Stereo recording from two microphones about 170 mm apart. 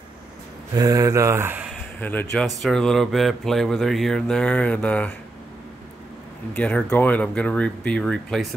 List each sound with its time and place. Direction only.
0.7 s speech: 20° right (ahead or behind)
1.7 s a sound: 10° left (ahead or behind)
2.4 s speech: centre (ahead or behind)
6.5 s speech: 10° left (ahead or behind)